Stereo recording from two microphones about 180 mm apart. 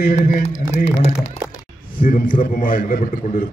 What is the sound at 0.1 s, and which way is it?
Speech, 50° left (ahead or behind).